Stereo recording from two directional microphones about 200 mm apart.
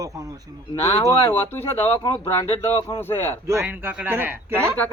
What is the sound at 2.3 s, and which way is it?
Speech, 30° left (ahead or behind).